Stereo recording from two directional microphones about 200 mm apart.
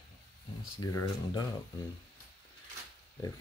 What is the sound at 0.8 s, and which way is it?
Speech, 15° left (ahead or behind).